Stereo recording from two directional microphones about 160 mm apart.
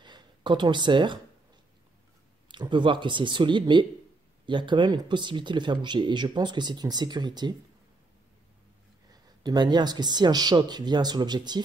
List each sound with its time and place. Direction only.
0.0 s speech: 30° right (ahead or behind)
2.4 s speech: 30° right (ahead or behind)
9.1 s speech: 25° right (ahead or behind)